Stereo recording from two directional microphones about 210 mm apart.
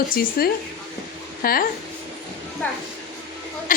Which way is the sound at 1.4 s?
45° left (ahead or behind).